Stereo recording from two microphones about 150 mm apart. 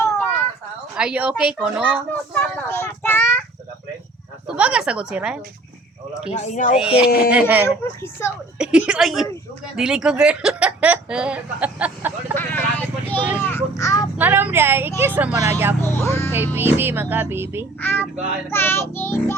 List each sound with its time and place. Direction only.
0.0 s a sound: 10° left (ahead or behind)
0.9 s speech: 5° right (ahead or behind)
2.3 s children playing: 15° left (ahead or behind)
4.5 s speech: 5° right (ahead or behind)
6.3 s speech: 50° left (ahead or behind)
6.7 s a woman's voice: 5° right (ahead or behind)
12.3 s vehicle: 15° left (ahead or behind)
13.4 s a sound: 15° left (ahead or behind)
14.2 s a woman's voice: 10° right (ahead or behind)
15.8 s child singing: 15° left (ahead or behind)
16.6 s speech: 15° right (ahead or behind)
17.7 s child singing: 15° left (ahead or behind)